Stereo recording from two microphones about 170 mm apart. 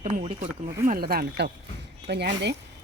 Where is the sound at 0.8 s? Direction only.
60° right (ahead or behind).